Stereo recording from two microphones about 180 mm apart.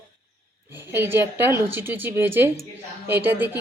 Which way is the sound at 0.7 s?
10° right (ahead or behind).